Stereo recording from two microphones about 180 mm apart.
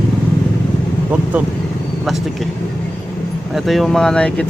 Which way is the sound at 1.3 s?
10° right (ahead or behind).